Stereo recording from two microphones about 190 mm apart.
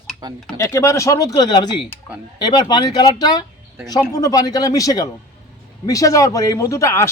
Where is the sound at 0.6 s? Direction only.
15° left (ahead or behind).